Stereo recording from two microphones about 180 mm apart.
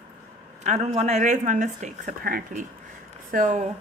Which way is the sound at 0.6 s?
40° right (ahead or behind).